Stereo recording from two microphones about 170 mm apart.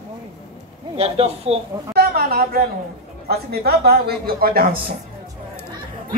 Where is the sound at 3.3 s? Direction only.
70° right (ahead or behind).